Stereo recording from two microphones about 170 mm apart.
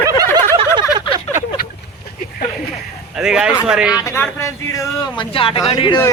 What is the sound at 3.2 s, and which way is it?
Speech, 5° right (ahead or behind).